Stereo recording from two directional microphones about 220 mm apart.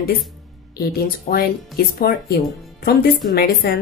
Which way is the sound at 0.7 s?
45° left (ahead or behind).